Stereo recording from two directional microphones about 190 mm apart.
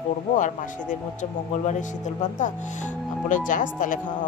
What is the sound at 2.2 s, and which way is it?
Speech, 40° left (ahead or behind).